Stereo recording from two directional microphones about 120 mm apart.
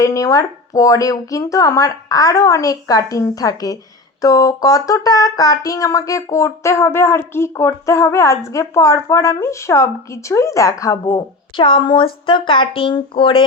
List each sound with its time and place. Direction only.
0.0 s speech: 25° left (ahead or behind); by 13.4 s 45° left (ahead or behind)